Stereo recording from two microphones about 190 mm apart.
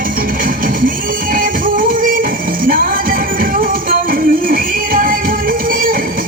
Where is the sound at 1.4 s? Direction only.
45° right (ahead or behind).